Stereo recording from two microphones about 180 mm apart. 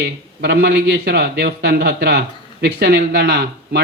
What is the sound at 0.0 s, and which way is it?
A man's voice, 65° right (ahead or behind).